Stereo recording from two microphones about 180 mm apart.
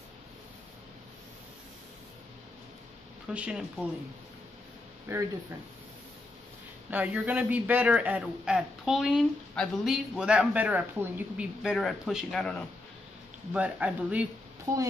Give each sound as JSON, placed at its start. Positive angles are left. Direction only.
{"t": 3.3, "sound": "a man's voice", "side_deg": -5}
{"t": 5.1, "sound": "a man's voice", "side_deg": -15}
{"t": 6.9, "sound": "a man's voice", "side_deg": -10}
{"t": 11.6, "sound": "a man's voice", "side_deg": 0}